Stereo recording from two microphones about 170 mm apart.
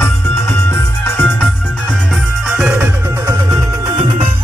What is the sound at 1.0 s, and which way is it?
Music, 10° left (ahead or behind).